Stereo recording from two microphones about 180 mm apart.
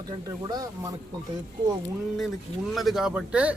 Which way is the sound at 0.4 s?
20° right (ahead or behind).